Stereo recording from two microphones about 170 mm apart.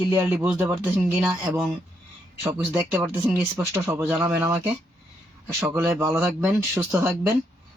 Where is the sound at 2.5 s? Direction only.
15° right (ahead or behind).